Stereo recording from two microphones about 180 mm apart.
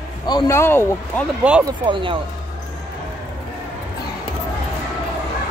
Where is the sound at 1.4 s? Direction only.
5° right (ahead or behind).